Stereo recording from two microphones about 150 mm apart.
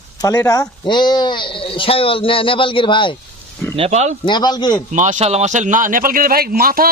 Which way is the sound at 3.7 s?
45° right (ahead or behind).